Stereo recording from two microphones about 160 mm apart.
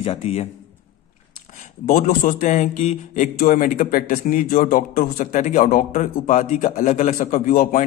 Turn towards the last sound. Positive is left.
turn(degrees=50)  # may be behind; listen again after turning